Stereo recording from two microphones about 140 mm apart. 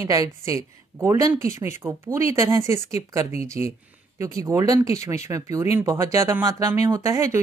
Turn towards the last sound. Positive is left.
turn(degrees=-20)  # may be behind; listen again after turning